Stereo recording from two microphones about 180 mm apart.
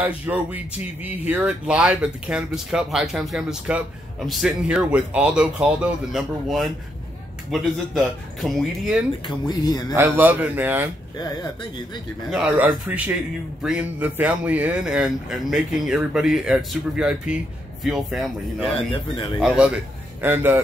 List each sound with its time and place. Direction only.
0.0 s a man's voice: 10° right (ahead or behind)
9.3 s speech: 20° left (ahead or behind)
9.9 s a man's voice: 10° right (ahead or behind)
11.1 s speech: 20° left (ahead or behind)
12.3 s a man's voice: 5° right (ahead or behind)